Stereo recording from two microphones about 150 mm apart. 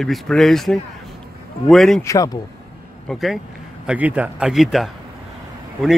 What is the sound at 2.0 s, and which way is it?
Speech, 20° left (ahead or behind).